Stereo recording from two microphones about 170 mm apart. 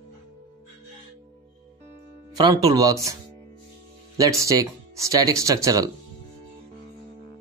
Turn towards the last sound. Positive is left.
turn(degrees=-20)  # may be behind; listen again after turning